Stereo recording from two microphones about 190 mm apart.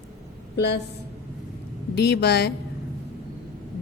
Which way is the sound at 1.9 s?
60° left (ahead or behind).